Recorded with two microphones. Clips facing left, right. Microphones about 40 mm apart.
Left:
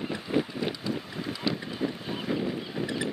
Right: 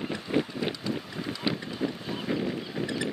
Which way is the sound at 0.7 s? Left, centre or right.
Centre.